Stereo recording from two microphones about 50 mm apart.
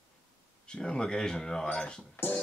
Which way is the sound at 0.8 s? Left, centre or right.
Centre.